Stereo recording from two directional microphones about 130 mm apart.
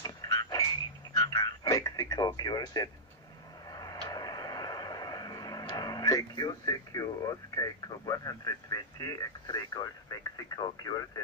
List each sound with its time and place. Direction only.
0.0 s frog: 30° left (ahead or behind)
1.1 s radio: 30° left (ahead or behind)
3.6 s a sound: 30° left (ahead or behind)